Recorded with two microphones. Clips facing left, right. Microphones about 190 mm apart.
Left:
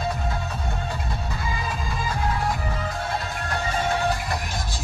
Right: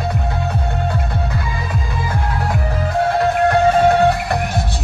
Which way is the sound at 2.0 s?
65° right (ahead or behind).